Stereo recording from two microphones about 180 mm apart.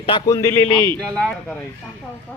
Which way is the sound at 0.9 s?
5° left (ahead or behind).